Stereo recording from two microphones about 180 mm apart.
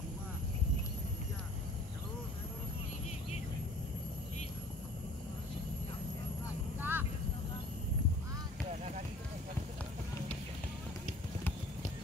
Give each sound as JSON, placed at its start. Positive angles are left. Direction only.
{"t": 6.8, "sound": "vehicle", "side_deg": -10}